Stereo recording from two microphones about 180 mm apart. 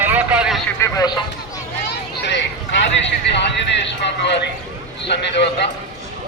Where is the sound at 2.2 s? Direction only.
75° left (ahead or behind).